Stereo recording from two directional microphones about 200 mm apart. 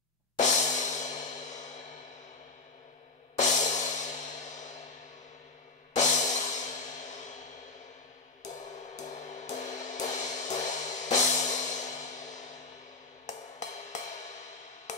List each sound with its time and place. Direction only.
0.4 s music: 35° left (ahead or behind)
3.3 s music: 35° left (ahead or behind)
5.9 s music: 35° left (ahead or behind)
8.9 s music: 35° left (ahead or behind)